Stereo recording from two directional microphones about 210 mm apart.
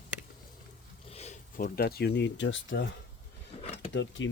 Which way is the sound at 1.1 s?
30° left (ahead or behind).